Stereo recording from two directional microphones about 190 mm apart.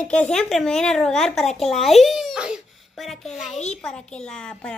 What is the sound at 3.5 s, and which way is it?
Speech, 35° left (ahead or behind).